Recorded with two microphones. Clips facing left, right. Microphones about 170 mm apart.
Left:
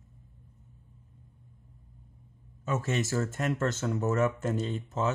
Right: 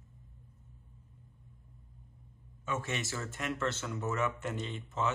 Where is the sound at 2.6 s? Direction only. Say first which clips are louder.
Left 6 dB; 40° left (ahead or behind).